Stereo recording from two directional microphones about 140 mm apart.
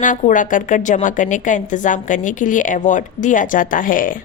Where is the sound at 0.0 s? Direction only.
65° left (ahead or behind).